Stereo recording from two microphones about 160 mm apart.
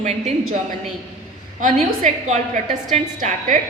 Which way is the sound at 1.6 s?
50° right (ahead or behind).